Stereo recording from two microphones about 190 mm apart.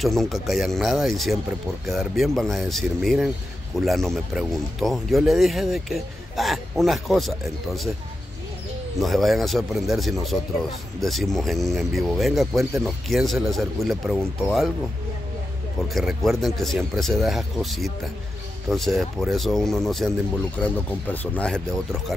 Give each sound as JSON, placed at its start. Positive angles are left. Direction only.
{"t": 0.0, "sound": "speech", "side_deg": 0}
{"t": 9.0, "sound": "speech", "side_deg": 0}
{"t": 15.9, "sound": "speech", "side_deg": 0}
{"t": 21.1, "sound": "speech", "side_deg": 10}